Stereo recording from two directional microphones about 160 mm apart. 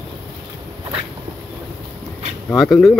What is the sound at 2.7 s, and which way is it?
Speech, centre (ahead or behind).